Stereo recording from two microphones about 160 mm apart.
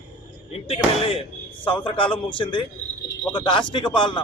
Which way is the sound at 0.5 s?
35° left (ahead or behind).